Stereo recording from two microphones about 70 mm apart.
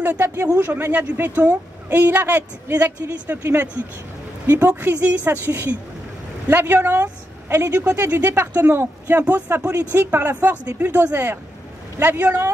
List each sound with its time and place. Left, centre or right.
0.0 s a woman's voice: right
8.1 s a woman's voice: right